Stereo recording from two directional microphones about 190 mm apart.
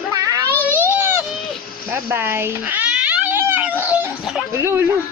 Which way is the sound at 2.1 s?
10° right (ahead or behind).